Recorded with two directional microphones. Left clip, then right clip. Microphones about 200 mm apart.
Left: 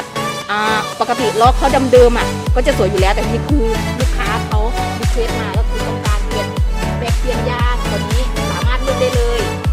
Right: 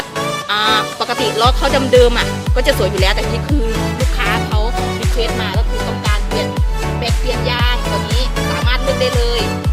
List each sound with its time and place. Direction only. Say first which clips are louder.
0.5 s music: right 2 dB; 35° left (ahead or behind)